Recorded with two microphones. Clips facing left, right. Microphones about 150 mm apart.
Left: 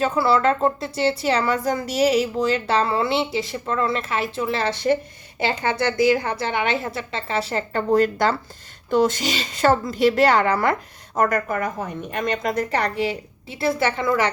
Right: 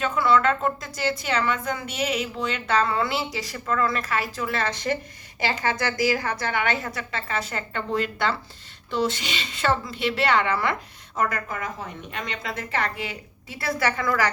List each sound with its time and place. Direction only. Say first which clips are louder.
0.0 s a woman's voice: left 2 dB; 35° left (ahead or behind)